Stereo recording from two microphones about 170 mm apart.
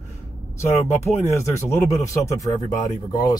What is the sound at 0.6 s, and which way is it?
Speech, 15° left (ahead or behind).